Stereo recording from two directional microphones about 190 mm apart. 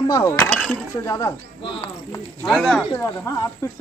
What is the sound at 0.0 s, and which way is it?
Speech, 15° left (ahead or behind).